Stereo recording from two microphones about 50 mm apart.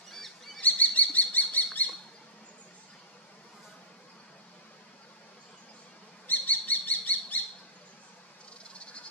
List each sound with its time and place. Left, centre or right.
0.6 s bird: left
6.2 s bird: left
8.7 s a sound: left